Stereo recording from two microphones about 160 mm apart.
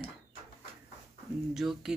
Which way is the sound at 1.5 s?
Centre (ahead or behind).